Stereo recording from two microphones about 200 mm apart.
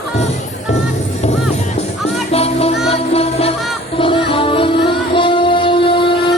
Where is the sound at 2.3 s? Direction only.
30° left (ahead or behind).